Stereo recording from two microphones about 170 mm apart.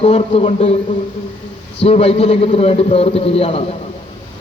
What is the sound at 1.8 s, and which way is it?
A man's voice, 35° left (ahead or behind).